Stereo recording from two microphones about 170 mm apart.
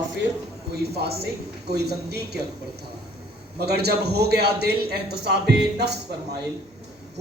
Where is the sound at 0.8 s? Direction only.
70° right (ahead or behind).